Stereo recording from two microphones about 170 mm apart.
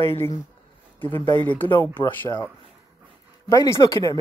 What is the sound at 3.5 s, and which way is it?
Speech, 20° left (ahead or behind).